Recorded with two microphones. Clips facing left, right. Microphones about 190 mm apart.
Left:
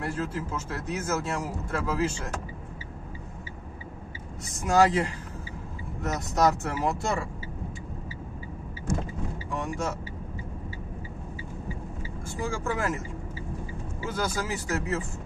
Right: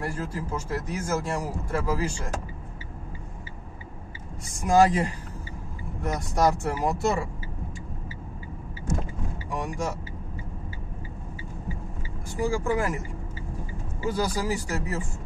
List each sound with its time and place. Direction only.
0.1 s speech: 10° right (ahead or behind)
4.6 s speech: 15° right (ahead or behind)
9.5 s speech: 15° right (ahead or behind)
12.4 s speech: 15° right (ahead or behind)
14.1 s speech: 15° right (ahead or behind)